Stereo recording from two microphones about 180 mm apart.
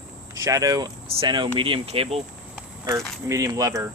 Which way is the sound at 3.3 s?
20° right (ahead or behind).